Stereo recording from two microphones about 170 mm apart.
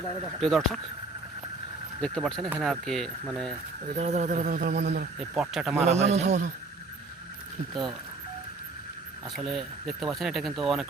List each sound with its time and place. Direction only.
0.3 s speech: centre (ahead or behind)
2.0 s speech: 5° left (ahead or behind)
3.9 s speech: 40° right (ahead or behind); by 5.0 s 75° right (ahead or behind)
5.3 s speech: 5° right (ahead or behind)
5.8 s a man's voice: 40° right (ahead or behind)
9.3 s speech: centre (ahead or behind)